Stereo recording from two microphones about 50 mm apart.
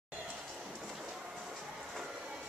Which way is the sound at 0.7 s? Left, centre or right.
Centre.